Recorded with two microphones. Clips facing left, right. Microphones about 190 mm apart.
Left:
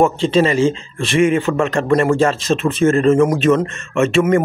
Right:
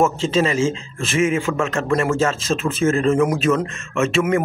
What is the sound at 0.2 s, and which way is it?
A man's voice, centre (ahead or behind).